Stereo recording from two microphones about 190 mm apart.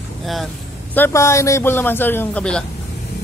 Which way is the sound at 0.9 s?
15° left (ahead or behind).